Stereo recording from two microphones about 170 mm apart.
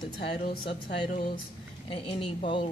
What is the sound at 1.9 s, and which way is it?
Speech, 35° left (ahead or behind).